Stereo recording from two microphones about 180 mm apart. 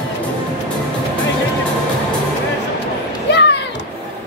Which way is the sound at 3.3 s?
75° left (ahead or behind).